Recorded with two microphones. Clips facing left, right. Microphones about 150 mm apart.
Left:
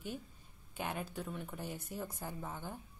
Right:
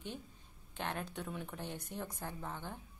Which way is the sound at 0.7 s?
5° left (ahead or behind).